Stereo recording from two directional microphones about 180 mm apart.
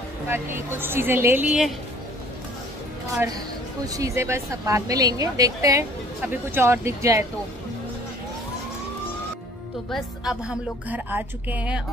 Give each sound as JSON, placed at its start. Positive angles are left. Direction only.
{"t": 0.3, "sound": "a woman's voice", "side_deg": -10}
{"t": 3.2, "sound": "a woman's voice", "side_deg": -20}
{"t": 9.8, "sound": "speech", "side_deg": 0}